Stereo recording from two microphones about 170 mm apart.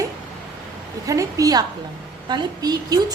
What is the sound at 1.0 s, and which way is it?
A woman's voice, 20° right (ahead or behind).